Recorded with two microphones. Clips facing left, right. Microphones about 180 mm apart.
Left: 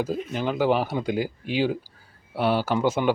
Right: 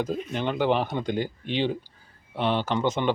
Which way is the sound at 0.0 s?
5° left (ahead or behind).